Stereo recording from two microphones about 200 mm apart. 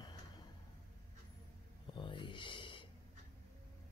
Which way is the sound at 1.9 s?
25° left (ahead or behind).